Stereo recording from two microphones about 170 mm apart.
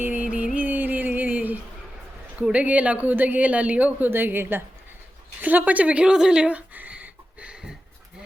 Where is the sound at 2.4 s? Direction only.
10° right (ahead or behind).